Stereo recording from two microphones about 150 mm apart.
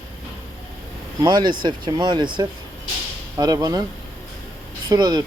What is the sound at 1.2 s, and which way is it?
Speech, 30° right (ahead or behind).